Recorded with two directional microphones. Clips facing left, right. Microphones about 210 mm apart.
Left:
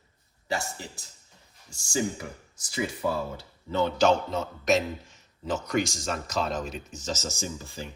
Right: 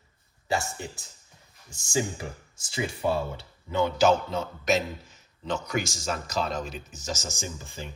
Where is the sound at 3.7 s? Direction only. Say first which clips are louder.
Even; 10° right (ahead or behind).